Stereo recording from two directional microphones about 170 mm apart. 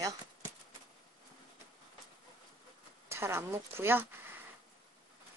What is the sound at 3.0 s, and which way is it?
Speech, 15° right (ahead or behind).